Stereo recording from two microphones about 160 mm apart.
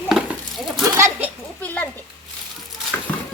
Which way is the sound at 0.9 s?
15° right (ahead or behind).